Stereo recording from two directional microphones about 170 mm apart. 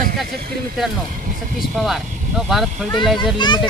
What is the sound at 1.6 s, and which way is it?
Speech, centre (ahead or behind).